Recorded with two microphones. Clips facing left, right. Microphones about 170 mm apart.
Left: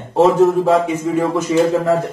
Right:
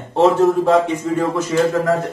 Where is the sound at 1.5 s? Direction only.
15° left (ahead or behind).